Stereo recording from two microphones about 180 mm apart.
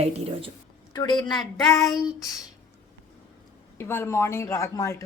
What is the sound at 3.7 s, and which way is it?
A woman's voice, 15° left (ahead or behind).